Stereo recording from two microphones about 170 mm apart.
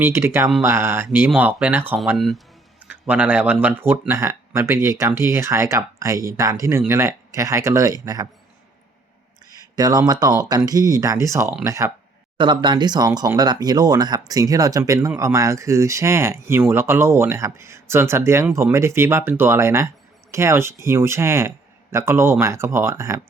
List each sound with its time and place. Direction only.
0.0 s speech: 15° right (ahead or behind)
2.1 s speech: centre (ahead or behind); by 8.3 s 20° right (ahead or behind)
9.5 s speech: 25° right (ahead or behind)